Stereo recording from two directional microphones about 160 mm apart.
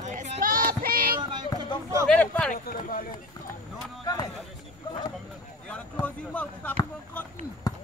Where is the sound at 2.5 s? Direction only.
60° left (ahead or behind).